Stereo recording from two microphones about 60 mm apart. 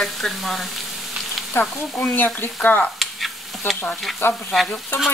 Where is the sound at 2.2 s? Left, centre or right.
Left.